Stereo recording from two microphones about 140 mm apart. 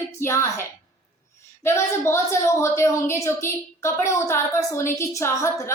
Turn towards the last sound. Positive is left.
turn(degrees=20)  # may be behind; listen again after turning